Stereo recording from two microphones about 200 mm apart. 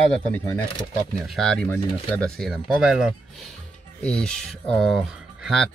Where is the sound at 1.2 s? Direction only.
Centre (ahead or behind).